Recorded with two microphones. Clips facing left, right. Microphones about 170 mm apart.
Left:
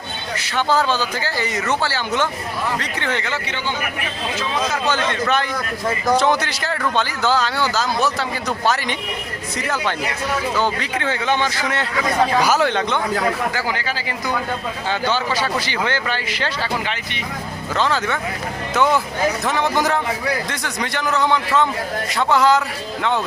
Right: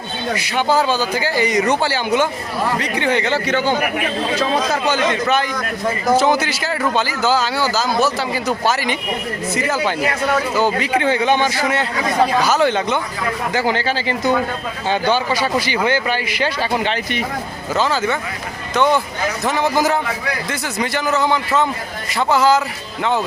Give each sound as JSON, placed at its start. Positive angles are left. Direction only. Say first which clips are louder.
{"t": 0.3, "sound": "speech", "louder": "right 1 dB", "side_deg": -10}
{"t": 3.2, "sound": "speech", "louder": "right 8 dB", "side_deg": -40}
{"t": 4.9, "sound": "a man's voice", "louder": "right 3 dB", "side_deg": -5}
{"t": 12.4, "sound": "speech", "louder": "right 1 dB", "side_deg": 10}
{"t": 12.6, "sound": "a man's voice", "louder": "right 3 dB", "side_deg": -5}
{"t": 13.5, "sound": "speech", "louder": "right 5 dB", "side_deg": -25}
{"t": 14.8, "sound": "a man's voice", "louder": "right 4 dB", "side_deg": -15}